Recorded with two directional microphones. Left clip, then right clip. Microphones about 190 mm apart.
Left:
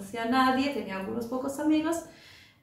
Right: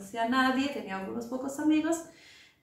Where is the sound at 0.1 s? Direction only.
15° right (ahead or behind).